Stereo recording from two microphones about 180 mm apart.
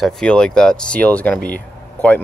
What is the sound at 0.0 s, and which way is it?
Speech, 5° left (ahead or behind).